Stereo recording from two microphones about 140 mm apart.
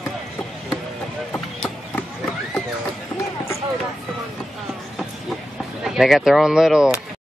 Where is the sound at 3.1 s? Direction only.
20° left (ahead or behind).